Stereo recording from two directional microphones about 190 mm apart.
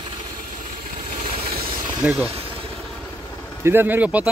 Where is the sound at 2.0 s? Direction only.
10° right (ahead or behind).